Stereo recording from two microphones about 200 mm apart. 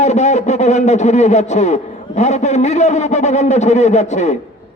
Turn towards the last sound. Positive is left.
turn(degrees=35)  # may be behind; listen again after turning